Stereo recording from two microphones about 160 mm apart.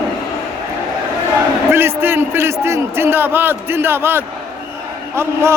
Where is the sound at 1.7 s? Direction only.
15° right (ahead or behind).